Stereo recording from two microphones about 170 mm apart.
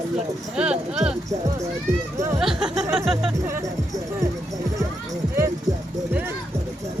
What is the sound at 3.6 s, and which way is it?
Speech, 20° right (ahead or behind).